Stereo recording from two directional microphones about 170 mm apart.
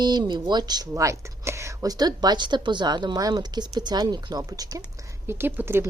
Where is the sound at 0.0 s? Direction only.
25° right (ahead or behind).